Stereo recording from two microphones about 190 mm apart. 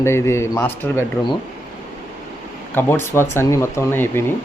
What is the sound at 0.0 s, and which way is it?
Speech, 15° left (ahead or behind).